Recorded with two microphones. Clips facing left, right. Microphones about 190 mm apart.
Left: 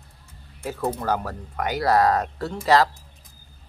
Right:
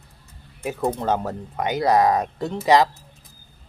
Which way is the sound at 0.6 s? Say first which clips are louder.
Right 3 dB; 15° right (ahead or behind).